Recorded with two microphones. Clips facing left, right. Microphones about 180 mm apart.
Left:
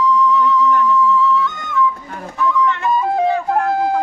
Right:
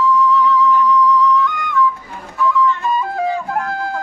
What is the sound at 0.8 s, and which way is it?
Music, 25° left (ahead or behind).